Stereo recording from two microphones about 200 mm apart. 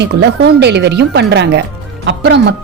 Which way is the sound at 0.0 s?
55° right (ahead or behind).